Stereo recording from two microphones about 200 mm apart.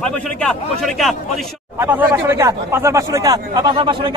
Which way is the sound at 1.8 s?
10° right (ahead or behind).